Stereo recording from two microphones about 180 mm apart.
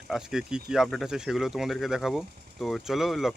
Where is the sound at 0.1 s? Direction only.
5° right (ahead or behind).